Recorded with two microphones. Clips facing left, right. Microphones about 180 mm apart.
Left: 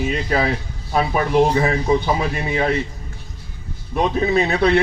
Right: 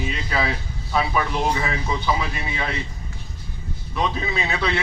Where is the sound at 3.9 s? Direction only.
50° left (ahead or behind).